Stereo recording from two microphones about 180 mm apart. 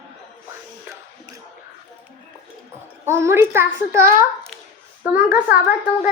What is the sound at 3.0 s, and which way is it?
A child's voice, 15° right (ahead or behind).